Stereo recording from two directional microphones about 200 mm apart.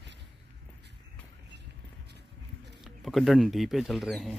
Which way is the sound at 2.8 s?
Centre (ahead or behind).